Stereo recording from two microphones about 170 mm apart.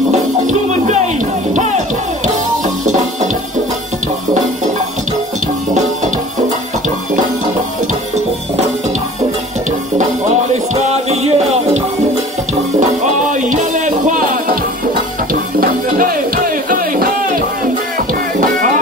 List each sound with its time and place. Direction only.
0.5 s music: 45° right (ahead or behind)
10.5 s music: 40° right (ahead or behind)
13.0 s music: 45° right (ahead or behind)
15.6 s music: 55° right (ahead or behind)